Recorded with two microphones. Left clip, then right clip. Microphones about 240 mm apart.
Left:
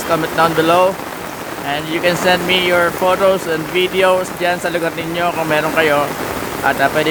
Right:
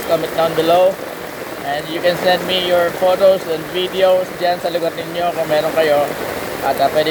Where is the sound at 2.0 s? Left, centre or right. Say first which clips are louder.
Left 1 dB; left.